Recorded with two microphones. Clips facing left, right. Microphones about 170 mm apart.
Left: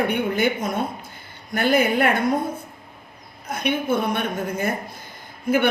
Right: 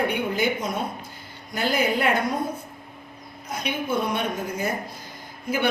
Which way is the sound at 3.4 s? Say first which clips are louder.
Left 5 dB; 55° left (ahead or behind).